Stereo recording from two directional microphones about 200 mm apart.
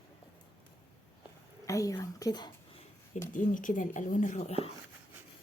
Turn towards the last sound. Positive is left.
turn(degrees=30)  # may be behind; listen again after turning